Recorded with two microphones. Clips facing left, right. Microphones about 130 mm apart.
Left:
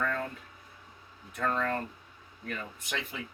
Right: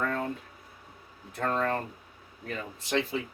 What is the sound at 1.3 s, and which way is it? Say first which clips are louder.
Speech: right 2 dB; 40° right (ahead or behind).